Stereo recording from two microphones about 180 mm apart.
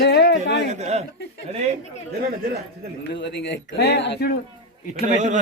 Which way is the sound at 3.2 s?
75° left (ahead or behind).